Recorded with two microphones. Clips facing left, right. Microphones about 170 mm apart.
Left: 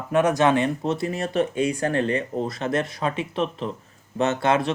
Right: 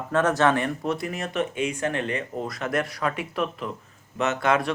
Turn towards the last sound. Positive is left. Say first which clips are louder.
# left 2 dB
turn(degrees=25)  # may be behind; listen again after turning